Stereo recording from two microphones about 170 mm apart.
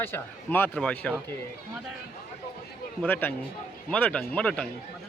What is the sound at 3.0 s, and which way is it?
Speech, 10° left (ahead or behind).